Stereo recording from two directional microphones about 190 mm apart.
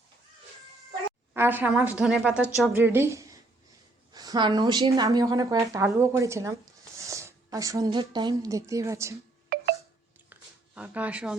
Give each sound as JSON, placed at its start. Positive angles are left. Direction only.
{"t": 1.3, "sound": "a woman's voice", "side_deg": -10}
{"t": 9.5, "sound": "telephone dialing", "side_deg": -55}
{"t": 10.8, "sound": "a woman's voice", "side_deg": -5}